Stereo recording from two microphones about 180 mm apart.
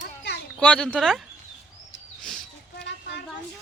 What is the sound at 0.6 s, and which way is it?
Speech, 5° left (ahead or behind).